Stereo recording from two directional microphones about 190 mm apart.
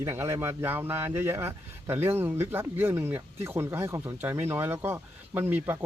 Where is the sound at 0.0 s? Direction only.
15° right (ahead or behind).